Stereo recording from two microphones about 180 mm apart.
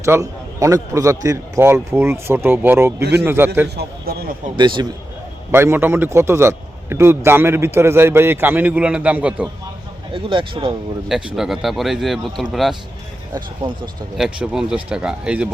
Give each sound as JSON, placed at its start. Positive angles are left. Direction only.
{"t": 0.0, "sound": "a man's voice", "side_deg": -15}
{"t": 3.0, "sound": "a man's voice", "side_deg": -65}
{"t": 3.2, "sound": "a man's voice", "side_deg": -10}
{"t": 3.8, "sound": "a man's voice", "side_deg": -60}
{"t": 4.5, "sound": "speech", "side_deg": -25}
{"t": 5.5, "sound": "a man's voice", "side_deg": -15}
{"t": 10.1, "sound": "speech", "side_deg": -30}
{"t": 11.3, "sound": "speech", "side_deg": 0}
{"t": 14.2, "sound": "speech", "side_deg": -5}